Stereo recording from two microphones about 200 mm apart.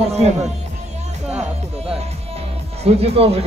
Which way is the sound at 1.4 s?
35° right (ahead or behind).